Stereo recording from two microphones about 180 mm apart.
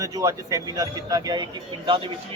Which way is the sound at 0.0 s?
20° right (ahead or behind).